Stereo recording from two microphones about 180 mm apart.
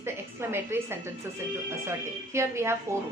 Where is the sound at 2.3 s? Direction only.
15° right (ahead or behind).